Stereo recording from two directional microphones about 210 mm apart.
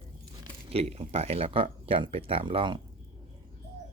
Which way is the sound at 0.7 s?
30° right (ahead or behind).